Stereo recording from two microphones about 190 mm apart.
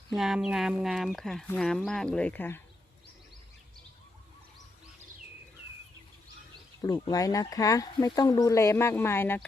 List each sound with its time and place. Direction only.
0.2 s speech: 5° right (ahead or behind)
6.8 s speech: 20° left (ahead or behind)